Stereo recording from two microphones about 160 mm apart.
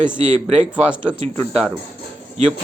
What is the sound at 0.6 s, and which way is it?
A man's voice, 5° right (ahead or behind).